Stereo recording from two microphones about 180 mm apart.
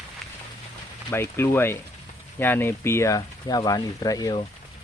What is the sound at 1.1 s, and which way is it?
Speech, 15° left (ahead or behind).